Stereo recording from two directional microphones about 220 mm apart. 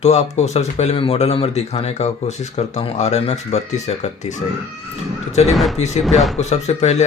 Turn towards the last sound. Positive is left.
turn(degrees=30)  # may be behind; listen again after turning